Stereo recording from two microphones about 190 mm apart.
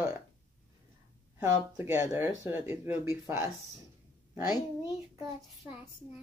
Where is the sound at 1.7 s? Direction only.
15° right (ahead or behind).